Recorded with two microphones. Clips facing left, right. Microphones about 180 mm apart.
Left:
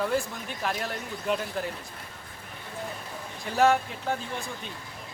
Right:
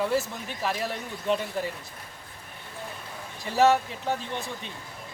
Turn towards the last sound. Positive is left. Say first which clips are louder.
# right 1 dB
turn(degrees=0)  # may be behind; listen again after turning